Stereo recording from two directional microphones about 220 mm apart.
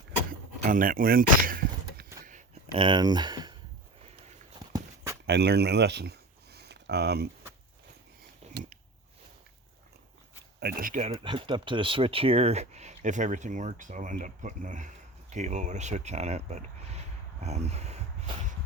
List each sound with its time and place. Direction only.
0.6 s speech: 40° right (ahead or behind)
2.7 s speech: 20° right (ahead or behind)
5.2 s a sound: 50° right (ahead or behind)
10.6 s speech: 45° right (ahead or behind)
11.1 s speech: 20° right (ahead or behind)